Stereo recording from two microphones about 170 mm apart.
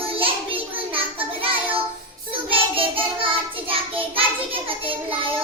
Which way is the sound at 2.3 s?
30° right (ahead or behind).